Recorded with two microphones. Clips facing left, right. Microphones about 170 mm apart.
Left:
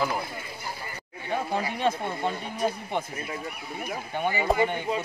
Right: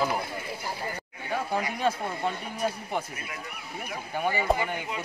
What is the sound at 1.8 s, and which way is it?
Speech, centre (ahead or behind).